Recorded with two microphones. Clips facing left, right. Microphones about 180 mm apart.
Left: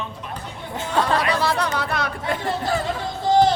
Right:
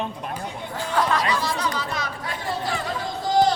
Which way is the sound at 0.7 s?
25° left (ahead or behind).